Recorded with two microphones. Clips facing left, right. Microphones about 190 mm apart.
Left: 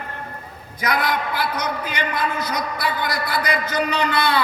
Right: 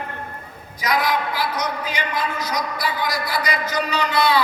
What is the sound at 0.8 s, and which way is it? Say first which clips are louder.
A man's voice: right 1 dB; 55° left (ahead or behind).